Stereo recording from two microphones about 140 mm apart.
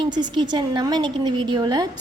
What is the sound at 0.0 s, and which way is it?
A woman's voice, 30° right (ahead or behind).